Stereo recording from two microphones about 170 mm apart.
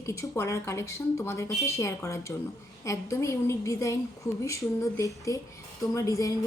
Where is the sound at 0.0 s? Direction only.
20° left (ahead or behind).